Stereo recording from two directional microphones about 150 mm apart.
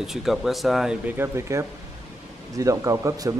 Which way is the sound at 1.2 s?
20° right (ahead or behind).